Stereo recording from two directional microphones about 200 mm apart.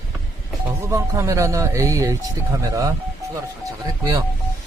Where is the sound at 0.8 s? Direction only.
15° right (ahead or behind).